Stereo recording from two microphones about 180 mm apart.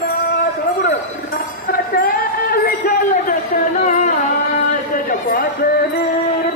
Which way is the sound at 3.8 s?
40° left (ahead or behind).